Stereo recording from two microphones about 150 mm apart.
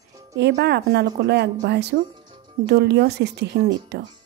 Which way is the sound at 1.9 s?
90° right.